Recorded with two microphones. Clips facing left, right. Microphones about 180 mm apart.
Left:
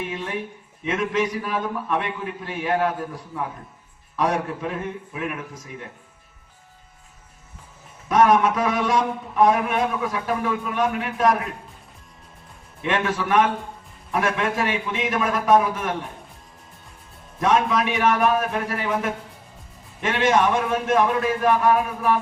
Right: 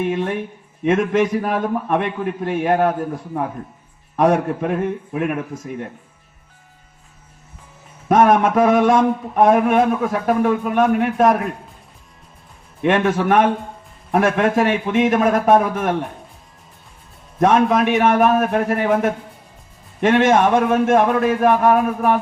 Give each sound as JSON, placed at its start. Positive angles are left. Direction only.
{"t": 0.0, "sound": "a man's voice", "side_deg": -50}
{"t": 8.0, "sound": "a man's voice", "side_deg": -50}
{"t": 12.8, "sound": "a man's voice", "side_deg": -50}
{"t": 17.4, "sound": "a man's voice", "side_deg": -50}